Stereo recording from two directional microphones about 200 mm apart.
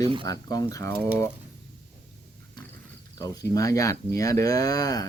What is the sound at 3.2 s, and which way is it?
Speech, 15° left (ahead or behind).